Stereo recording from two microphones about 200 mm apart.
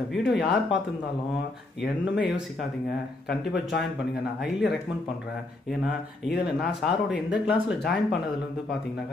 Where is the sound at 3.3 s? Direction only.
60° left (ahead or behind).